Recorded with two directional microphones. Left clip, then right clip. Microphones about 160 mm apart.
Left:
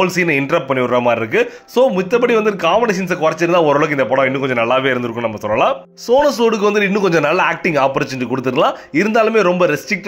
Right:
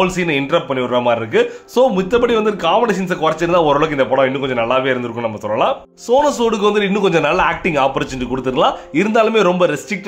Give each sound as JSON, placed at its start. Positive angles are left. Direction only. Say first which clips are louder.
{"t": 0.0, "sound": "speech", "louder": "left 2 dB", "side_deg": 25}
{"t": 1.4, "sound": "speech", "louder": "even", "side_deg": 15}